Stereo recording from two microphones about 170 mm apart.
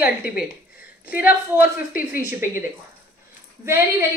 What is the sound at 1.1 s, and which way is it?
Speech, 10° right (ahead or behind).